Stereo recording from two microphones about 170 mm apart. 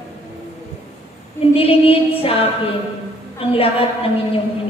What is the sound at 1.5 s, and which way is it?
Female singing, 35° left (ahead or behind).